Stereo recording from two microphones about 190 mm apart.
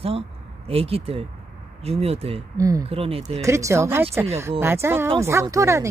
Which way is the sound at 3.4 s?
15° right (ahead or behind).